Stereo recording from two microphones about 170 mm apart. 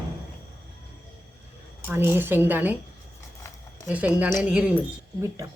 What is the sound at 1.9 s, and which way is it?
Speech, 10° right (ahead or behind).